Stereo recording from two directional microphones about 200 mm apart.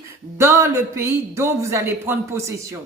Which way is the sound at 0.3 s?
15° right (ahead or behind).